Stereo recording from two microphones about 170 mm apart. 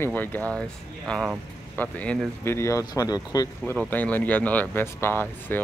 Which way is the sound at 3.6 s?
10° left (ahead or behind).